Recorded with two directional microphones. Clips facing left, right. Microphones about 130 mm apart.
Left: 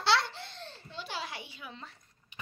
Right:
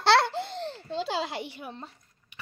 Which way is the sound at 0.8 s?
90° right.